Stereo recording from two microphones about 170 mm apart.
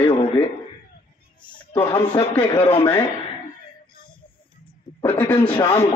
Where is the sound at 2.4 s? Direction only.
30° left (ahead or behind).